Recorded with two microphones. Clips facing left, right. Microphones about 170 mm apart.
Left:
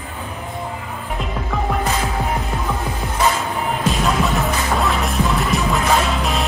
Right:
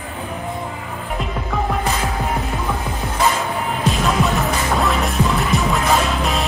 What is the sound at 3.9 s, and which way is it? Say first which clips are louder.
Music: right 1 dB; centre (ahead or behind).